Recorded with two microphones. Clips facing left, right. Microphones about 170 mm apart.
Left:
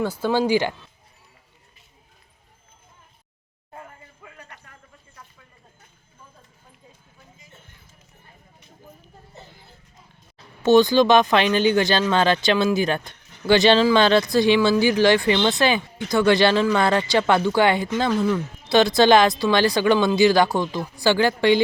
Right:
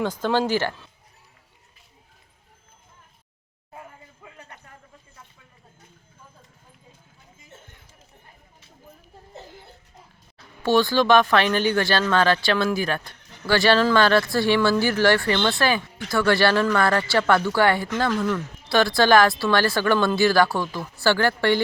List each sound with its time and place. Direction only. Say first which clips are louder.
0.0 s speech: left 1 dB; 5° left (ahead or behind)
4.2 s a sound: even; 25° right (ahead or behind)
10.6 s speech: left 5 dB; 20° left (ahead or behind)